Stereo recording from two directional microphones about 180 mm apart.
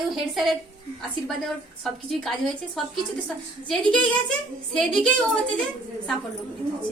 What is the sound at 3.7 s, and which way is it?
A woman's voice, 5° left (ahead or behind).